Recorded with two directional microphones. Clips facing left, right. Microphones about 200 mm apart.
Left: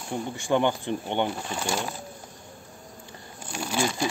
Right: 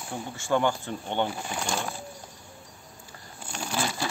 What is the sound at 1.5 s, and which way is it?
Speech, 5° left (ahead or behind).